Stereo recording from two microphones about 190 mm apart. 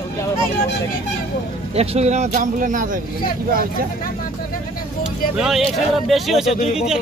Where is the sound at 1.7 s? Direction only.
30° right (ahead or behind); by 3.9 s 50° right (ahead or behind).